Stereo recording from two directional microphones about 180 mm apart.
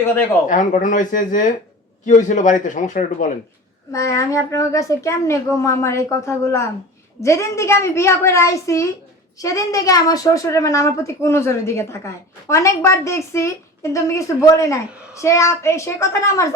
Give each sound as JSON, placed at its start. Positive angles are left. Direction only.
{"t": 0.4, "sound": "speech", "side_deg": 45}
{"t": 3.9, "sound": "a woman's voice", "side_deg": 15}